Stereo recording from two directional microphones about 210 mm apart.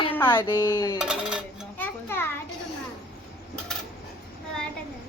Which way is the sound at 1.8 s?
10° left (ahead or behind).